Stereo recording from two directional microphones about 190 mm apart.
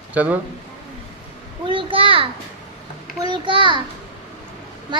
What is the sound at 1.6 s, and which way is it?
A child's voice, 25° right (ahead or behind).